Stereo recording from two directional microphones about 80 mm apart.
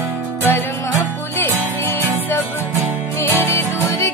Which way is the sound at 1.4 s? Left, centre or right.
Left.